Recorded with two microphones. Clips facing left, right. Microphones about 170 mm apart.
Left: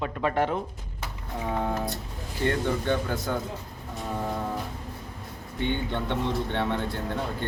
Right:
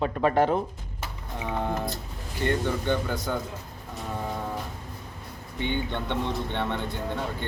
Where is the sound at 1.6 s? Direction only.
Centre (ahead or behind).